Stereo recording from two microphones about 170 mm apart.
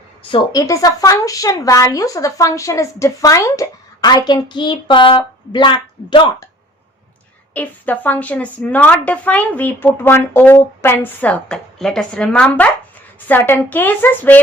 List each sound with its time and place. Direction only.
0.3 s a woman's voice: 25° left (ahead or behind)
7.5 s a woman's voice: 10° left (ahead or behind)